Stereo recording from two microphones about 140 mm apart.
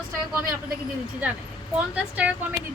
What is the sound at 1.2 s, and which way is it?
Speech, 15° right (ahead or behind).